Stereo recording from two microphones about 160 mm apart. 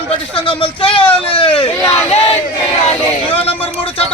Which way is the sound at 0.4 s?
35° left (ahead or behind).